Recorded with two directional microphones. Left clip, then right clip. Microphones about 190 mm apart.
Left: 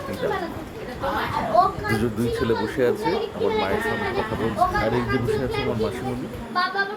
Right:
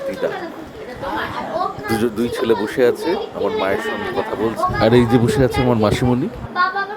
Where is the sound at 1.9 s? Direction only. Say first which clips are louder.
Right 4 dB; 45° right (ahead or behind).